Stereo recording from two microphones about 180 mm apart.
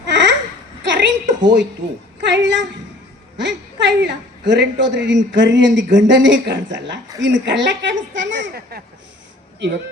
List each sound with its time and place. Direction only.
0.1 s babbling: 85° right
0.9 s a sound: 85° right
2.2 s a man's voice: 85° right